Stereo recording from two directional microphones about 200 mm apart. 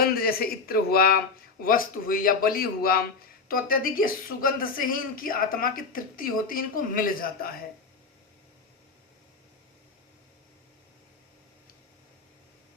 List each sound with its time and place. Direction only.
0.0 s a man's voice: 50° left (ahead or behind)